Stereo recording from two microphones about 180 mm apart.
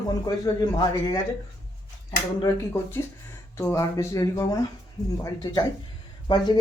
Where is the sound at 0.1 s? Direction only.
20° left (ahead or behind).